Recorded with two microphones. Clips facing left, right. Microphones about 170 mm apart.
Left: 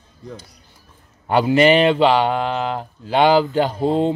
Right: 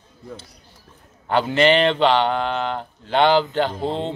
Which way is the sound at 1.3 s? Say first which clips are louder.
Left 3 dB; 10° left (ahead or behind).